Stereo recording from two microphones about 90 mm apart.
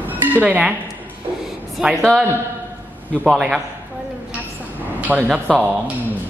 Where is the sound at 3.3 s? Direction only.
5° right (ahead or behind).